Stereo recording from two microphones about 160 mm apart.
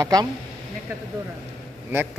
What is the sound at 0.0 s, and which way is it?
Speech, 25° right (ahead or behind).